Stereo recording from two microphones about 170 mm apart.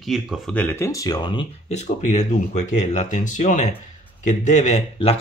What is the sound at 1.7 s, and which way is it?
Speech, 40° left (ahead or behind).